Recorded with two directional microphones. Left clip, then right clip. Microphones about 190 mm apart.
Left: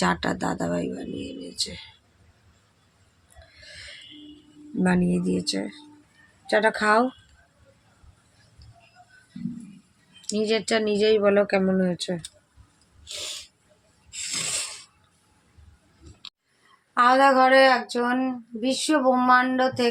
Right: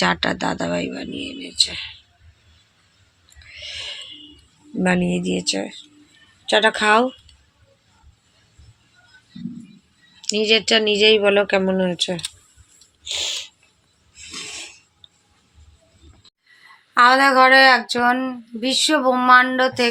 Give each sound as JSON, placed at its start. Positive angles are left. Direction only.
{"t": 0.0, "sound": "speech", "side_deg": -5}
{"t": 4.8, "sound": "speech", "side_deg": -10}
{"t": 10.2, "sound": "speech", "side_deg": -5}
{"t": 13.1, "sound": "owl", "side_deg": -5}
{"t": 16.9, "sound": "a sound", "side_deg": -30}